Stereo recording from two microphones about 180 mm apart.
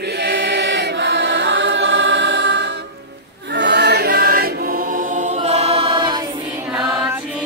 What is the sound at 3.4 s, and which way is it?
Choir, 70° right (ahead or behind).